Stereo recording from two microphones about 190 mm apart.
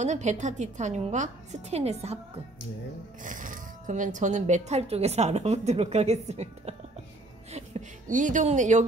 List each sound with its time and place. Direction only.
0.0 s speech: 40° right (ahead or behind)
3.2 s speech: 45° right (ahead or behind)